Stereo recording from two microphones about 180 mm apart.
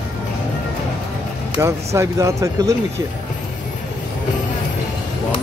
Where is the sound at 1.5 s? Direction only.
15° right (ahead or behind).